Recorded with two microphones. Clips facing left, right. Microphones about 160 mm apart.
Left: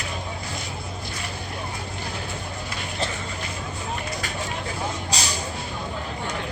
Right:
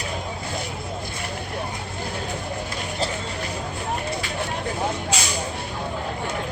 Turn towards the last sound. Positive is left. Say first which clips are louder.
# right 2 dB
turn(degrees=35)  # may be behind; listen again after turning